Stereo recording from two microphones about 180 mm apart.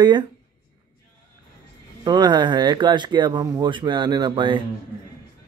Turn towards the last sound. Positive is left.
turn(degrees=-25)  # may be behind; listen again after turning